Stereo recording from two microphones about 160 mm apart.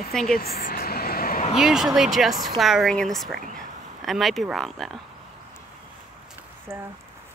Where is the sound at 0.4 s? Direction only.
70° left (ahead or behind).